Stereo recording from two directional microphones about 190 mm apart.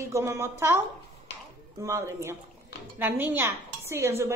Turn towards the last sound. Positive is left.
turn(degrees=-15)  # may be behind; listen again after turning